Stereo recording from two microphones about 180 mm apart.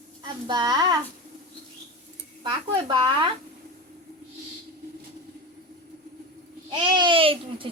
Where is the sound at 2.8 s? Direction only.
25° right (ahead or behind).